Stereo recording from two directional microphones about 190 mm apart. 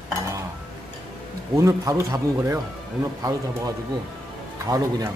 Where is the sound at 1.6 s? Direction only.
15° right (ahead or behind).